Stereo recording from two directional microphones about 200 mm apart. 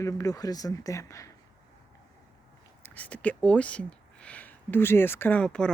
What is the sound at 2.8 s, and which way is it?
Speech, 10° left (ahead or behind).